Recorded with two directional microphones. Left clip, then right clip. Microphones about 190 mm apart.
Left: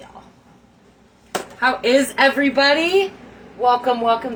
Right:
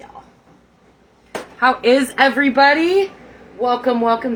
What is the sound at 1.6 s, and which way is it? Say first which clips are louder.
A woman's voice: right 3 dB; 15° right (ahead or behind).